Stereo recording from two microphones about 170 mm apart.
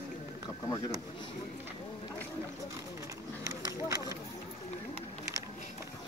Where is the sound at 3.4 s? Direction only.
20° right (ahead or behind).